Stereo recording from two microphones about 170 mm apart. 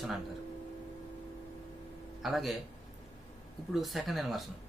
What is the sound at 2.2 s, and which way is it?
Speech, centre (ahead or behind).